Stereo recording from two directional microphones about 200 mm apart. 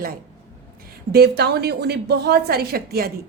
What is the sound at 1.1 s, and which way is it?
A woman's voice, 55° right (ahead or behind).